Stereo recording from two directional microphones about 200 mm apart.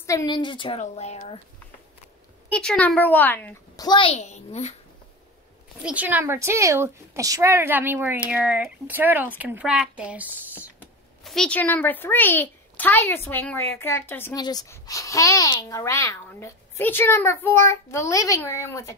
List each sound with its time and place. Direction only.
0.0 s a woman's voice: 15° left (ahead or behind); by 1.4 s 30° left (ahead or behind)
2.5 s speech: 5° left (ahead or behind)
3.8 s a child's voice: 25° left (ahead or behind)
5.8 s a woman's voice: 5° right (ahead or behind)
11.2 s speech: 5° left (ahead or behind)